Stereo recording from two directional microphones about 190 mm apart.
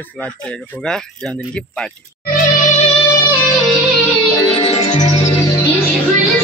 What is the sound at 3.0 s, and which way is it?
Music, 15° left (ahead or behind).